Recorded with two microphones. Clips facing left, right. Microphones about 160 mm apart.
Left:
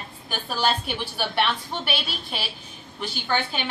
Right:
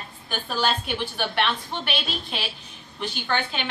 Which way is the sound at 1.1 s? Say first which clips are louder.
Left 2 dB; 5° left (ahead or behind).